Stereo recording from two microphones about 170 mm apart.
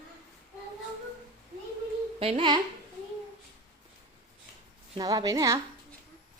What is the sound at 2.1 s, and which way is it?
Speech, 35° right (ahead or behind).